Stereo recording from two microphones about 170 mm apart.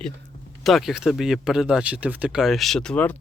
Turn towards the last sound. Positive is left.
turn(degrees=5)  # may be behind; listen again after turning